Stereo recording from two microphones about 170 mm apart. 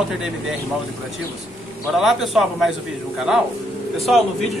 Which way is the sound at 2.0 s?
Centre (ahead or behind).